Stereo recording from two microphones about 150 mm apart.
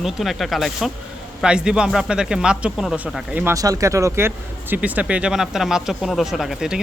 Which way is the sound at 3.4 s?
20° right (ahead or behind).